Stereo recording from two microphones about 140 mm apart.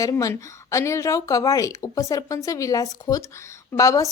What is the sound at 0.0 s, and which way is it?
A woman's voice, 25° left (ahead or behind).